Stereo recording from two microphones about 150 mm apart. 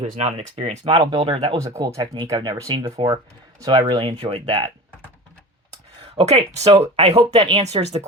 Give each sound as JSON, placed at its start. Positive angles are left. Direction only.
{"t": 0.0, "sound": "speech", "side_deg": -45}
{"t": 1.5, "sound": "speech", "side_deg": -20}
{"t": 6.1, "sound": "speech", "side_deg": -45}